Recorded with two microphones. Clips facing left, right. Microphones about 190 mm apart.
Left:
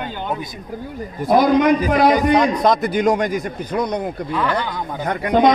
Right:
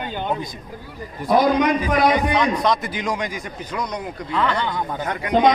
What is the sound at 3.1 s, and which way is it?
Speech, 60° left (ahead or behind).